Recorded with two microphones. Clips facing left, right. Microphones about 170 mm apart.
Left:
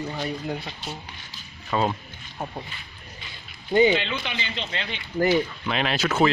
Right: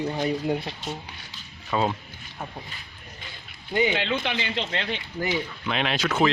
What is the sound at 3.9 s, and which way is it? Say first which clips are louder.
Speech: even; 55° right (ahead or behind).